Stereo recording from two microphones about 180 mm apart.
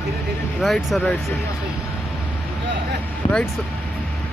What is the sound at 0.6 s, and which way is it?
Speech, centre (ahead or behind).